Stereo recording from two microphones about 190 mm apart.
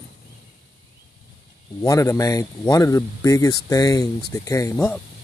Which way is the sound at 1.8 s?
15° left (ahead or behind).